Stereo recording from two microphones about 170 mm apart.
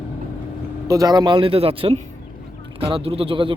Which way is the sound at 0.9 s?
20° right (ahead or behind).